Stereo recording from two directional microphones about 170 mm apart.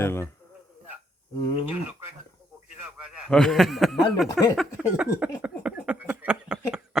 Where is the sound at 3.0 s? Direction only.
5° right (ahead or behind).